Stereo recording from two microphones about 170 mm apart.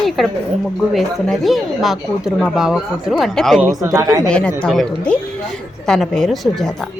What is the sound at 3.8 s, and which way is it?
Speech, 15° right (ahead or behind).